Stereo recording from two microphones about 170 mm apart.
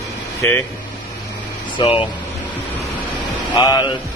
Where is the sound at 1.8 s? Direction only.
25° left (ahead or behind).